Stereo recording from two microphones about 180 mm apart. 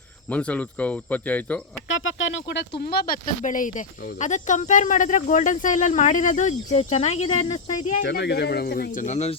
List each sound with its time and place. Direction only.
0.3 s speech: 10° left (ahead or behind)
1.9 s speech: 90° left; by 8.0 s 45° left (ahead or behind)
8.0 s speech: 65° left (ahead or behind); by 9.3 s 40° left (ahead or behind)